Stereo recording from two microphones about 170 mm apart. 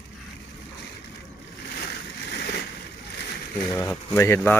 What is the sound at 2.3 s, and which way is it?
Vehicle, 80° left.